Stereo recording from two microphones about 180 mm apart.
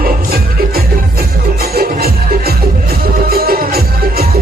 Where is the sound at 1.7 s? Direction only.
60° right (ahead or behind).